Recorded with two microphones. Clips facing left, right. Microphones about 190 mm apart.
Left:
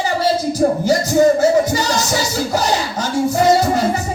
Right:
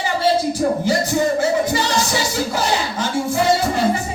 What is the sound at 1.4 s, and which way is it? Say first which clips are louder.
Music: left 4 dB; 40° left (ahead or behind).